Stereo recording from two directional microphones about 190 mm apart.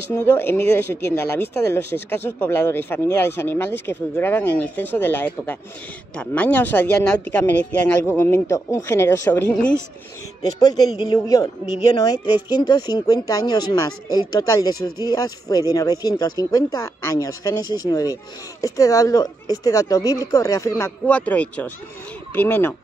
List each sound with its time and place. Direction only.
0.1 s speech: 10° left (ahead or behind)
10.4 s speech: 20° left (ahead or behind)